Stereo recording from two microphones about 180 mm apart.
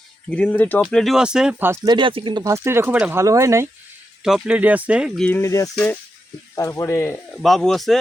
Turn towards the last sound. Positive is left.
turn(degrees=0)  # may be behind; listen again after turning